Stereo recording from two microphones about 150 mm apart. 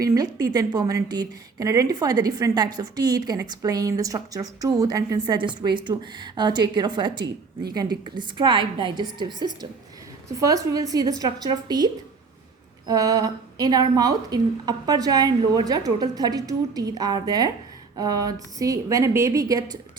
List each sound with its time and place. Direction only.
0.0 s a woman's voice: 25° right (ahead or behind)
12.9 s a woman's voice: 25° right (ahead or behind)
17.9 s a sound: 25° right (ahead or behind)
18.6 s a woman's voice: 20° right (ahead or behind)